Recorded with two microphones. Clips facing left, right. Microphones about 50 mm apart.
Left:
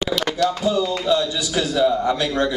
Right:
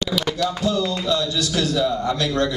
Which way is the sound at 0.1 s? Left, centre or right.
Centre.